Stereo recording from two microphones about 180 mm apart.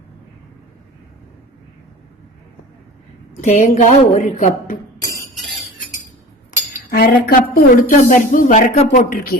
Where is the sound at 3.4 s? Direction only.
45° left (ahead or behind).